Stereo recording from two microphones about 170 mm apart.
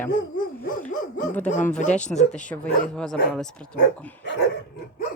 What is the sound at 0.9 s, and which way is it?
Dog, 50° left (ahead or behind).